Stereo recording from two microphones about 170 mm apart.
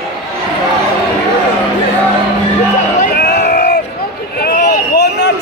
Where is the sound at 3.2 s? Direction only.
65° left (ahead or behind).